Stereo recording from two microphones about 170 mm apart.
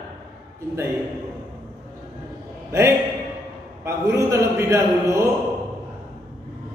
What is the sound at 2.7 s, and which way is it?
A man's voice, 15° right (ahead or behind).